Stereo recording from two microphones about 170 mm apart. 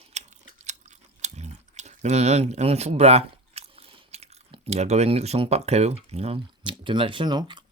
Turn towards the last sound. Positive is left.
turn(degrees=-25)  # may be behind; listen again after turning